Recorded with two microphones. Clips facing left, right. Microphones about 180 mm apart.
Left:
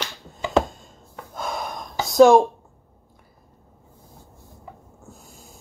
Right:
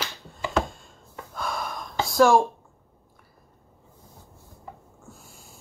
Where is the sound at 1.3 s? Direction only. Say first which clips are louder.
Left 2 dB; 20° left (ahead or behind).